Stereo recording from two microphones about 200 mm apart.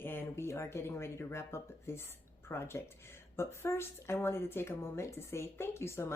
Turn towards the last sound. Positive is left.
turn(degrees=10)  # may be behind; listen again after turning